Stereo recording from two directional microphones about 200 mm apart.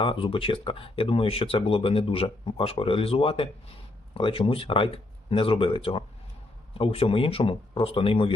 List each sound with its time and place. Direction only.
0.0 s speech: 25° left (ahead or behind)